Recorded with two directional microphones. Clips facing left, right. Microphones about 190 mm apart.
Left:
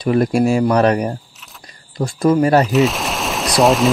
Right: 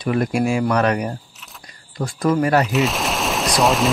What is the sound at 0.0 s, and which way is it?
Speech, 35° left (ahead or behind).